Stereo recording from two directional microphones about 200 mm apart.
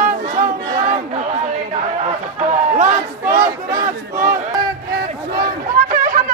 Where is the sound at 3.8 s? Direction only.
45° right (ahead or behind).